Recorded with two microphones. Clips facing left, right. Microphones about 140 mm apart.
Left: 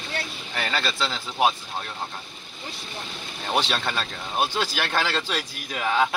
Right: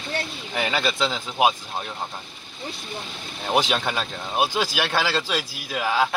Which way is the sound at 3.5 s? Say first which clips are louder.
Right 3 dB; 10° right (ahead or behind).